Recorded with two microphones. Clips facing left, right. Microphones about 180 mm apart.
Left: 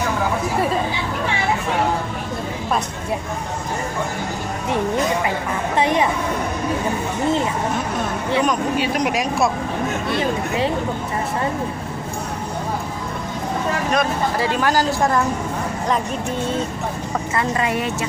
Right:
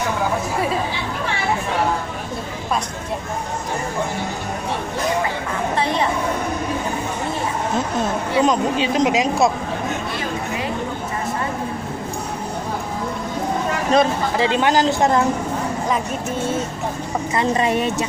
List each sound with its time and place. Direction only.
5.8 s speech: 15° left (ahead or behind)
8.4 s speech: 25° right (ahead or behind)
13.9 s speech: 20° right (ahead or behind)
17.4 s speech: 25° right (ahead or behind)